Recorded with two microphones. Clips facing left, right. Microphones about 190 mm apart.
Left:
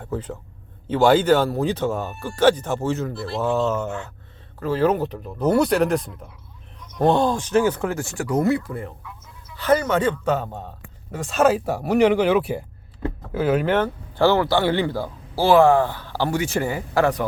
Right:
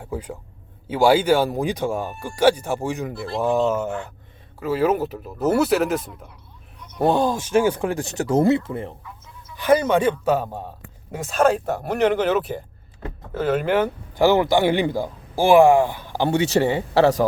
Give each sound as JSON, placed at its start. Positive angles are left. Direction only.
{"t": 0.0, "sound": "a man's voice", "side_deg": -10}
{"t": 9.6, "sound": "speech", "side_deg": -15}
{"t": 11.3, "sound": "speech", "side_deg": 5}
{"t": 13.8, "sound": "a man's voice", "side_deg": -15}